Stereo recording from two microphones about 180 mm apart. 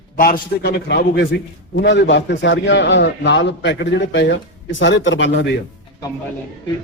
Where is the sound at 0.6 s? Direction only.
65° left (ahead or behind).